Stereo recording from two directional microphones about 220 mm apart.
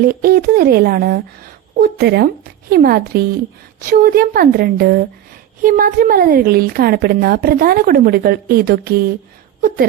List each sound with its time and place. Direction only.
0.0 s a woman's voice: 40° right (ahead or behind)